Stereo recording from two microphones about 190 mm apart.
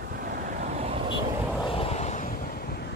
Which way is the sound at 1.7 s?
30° left (ahead or behind).